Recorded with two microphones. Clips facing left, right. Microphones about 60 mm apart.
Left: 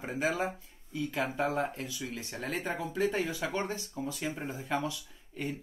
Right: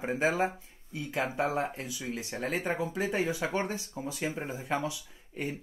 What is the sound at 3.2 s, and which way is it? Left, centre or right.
Speech, right.